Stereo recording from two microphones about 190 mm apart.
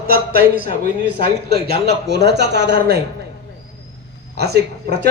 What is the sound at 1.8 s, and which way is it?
Speech, 60° right (ahead or behind).